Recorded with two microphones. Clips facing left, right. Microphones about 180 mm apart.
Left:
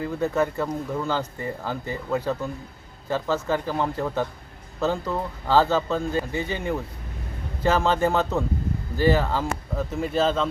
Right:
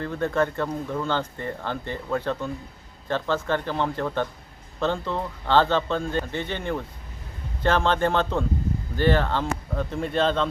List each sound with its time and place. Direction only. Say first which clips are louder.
0.0 s speech: left 1 dB; 5° left (ahead or behind)